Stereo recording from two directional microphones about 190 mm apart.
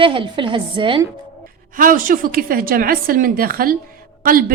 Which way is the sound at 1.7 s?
45° right (ahead or behind).